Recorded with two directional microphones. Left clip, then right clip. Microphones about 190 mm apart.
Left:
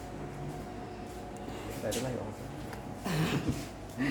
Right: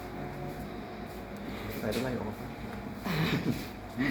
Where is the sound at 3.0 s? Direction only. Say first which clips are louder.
Right 1 dB; 25° left (ahead or behind).